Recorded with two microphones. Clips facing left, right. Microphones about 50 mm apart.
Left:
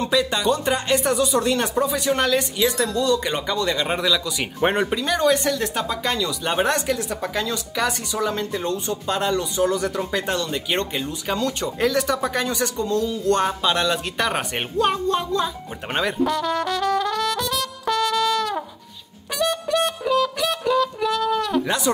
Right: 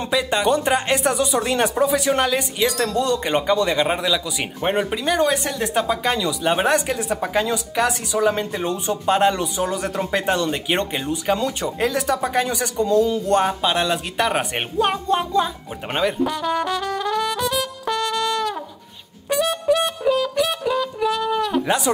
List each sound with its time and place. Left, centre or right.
0.0 s speech: centre
0.9 s speech: centre
2.1 s speech: centre
2.8 s speech: right
3.3 s speech: right
9.6 s speech: centre
9.8 s speech: right
15.9 s trumpet: centre
19.3 s music: centre
21.9 s speech: centre